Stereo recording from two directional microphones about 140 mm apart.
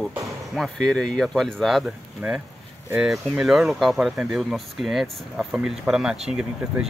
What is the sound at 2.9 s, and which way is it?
Speech, 5° right (ahead or behind).